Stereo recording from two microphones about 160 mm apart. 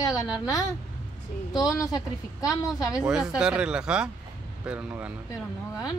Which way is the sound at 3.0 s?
5° right (ahead or behind).